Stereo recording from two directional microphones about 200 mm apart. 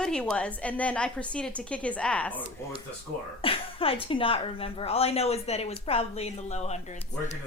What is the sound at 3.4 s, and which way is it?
A woman's voice, 25° left (ahead or behind).